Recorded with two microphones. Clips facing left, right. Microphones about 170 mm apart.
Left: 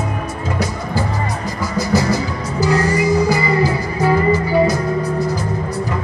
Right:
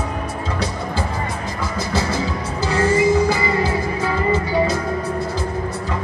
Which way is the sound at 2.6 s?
25° right (ahead or behind).